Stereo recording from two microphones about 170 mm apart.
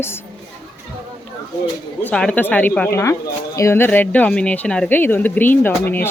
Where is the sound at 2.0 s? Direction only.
5° left (ahead or behind).